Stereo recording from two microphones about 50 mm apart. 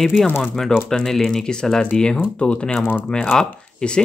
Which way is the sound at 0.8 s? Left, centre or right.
Centre.